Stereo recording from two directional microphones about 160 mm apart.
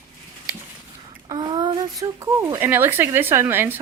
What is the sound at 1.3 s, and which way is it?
Speech, 25° right (ahead or behind).